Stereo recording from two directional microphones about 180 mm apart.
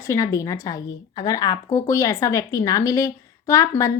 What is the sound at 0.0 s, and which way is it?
A woman's voice, 15° left (ahead or behind).